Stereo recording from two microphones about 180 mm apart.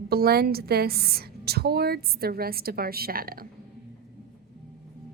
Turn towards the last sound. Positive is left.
turn(degrees=-55)  # may be behind; listen again after turning